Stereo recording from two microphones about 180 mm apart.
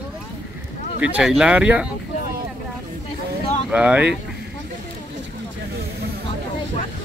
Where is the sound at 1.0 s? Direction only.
5° right (ahead or behind).